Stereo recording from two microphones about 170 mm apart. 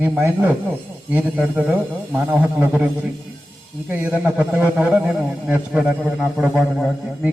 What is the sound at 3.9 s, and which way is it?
A man's voice, 10° right (ahead or behind).